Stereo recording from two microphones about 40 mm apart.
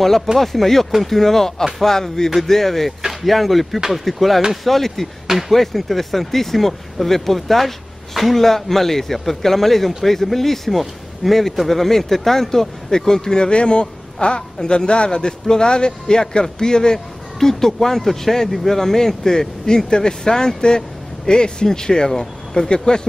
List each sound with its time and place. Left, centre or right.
0.4 s a man's voice: centre
3.0 s a sound: centre
3.3 s a man's voice: centre